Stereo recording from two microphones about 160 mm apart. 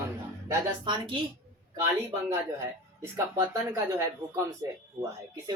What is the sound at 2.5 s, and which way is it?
Speech, 20° right (ahead or behind).